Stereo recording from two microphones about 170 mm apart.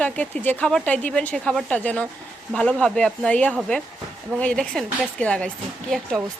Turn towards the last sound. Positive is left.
turn(degrees=5)  # may be behind; listen again after turning